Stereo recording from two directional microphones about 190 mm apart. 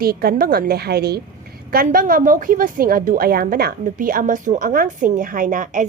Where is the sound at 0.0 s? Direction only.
55° right (ahead or behind).